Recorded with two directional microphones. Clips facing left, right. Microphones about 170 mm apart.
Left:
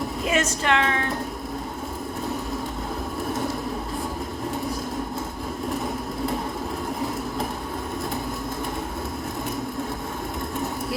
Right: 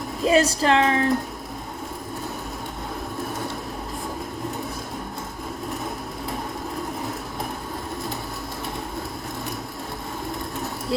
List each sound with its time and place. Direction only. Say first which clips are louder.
0.3 s speech: right 5 dB; 35° right (ahead or behind)